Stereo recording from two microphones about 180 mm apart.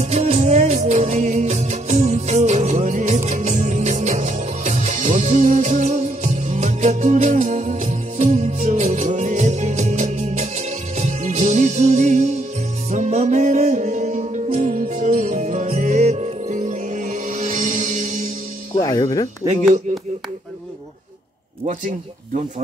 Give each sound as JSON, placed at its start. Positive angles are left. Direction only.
{"t": 0.0, "sound": "music", "side_deg": -40}
{"t": 18.8, "sound": "music", "side_deg": 20}
{"t": 21.6, "sound": "speech", "side_deg": -40}